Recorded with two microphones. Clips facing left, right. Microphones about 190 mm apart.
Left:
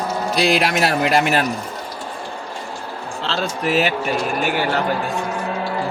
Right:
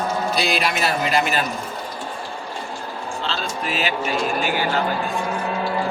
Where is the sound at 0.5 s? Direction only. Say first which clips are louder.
Left 4 dB; 85° left.